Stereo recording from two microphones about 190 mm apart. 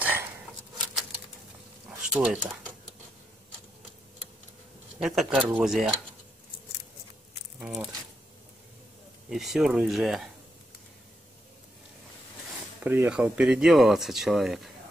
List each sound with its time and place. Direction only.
0.0 s a sound: 10° right (ahead or behind)
1.9 s a sound: 5° right (ahead or behind)
5.0 s speech: 5° right (ahead or behind)
7.6 s speech: 5° right (ahead or behind)
9.3 s speech: centre (ahead or behind)
12.8 s speech: 10° right (ahead or behind)